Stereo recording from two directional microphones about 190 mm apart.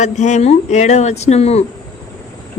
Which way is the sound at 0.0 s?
40° left (ahead or behind).